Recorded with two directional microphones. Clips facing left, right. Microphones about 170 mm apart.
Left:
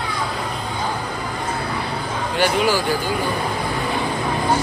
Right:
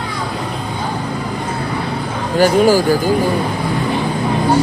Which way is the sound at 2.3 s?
45° right (ahead or behind).